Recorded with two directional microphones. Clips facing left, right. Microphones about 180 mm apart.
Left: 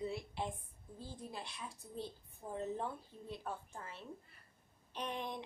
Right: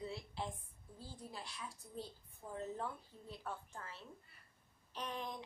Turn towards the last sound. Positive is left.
turn(degrees=20)  # may be behind; listen again after turning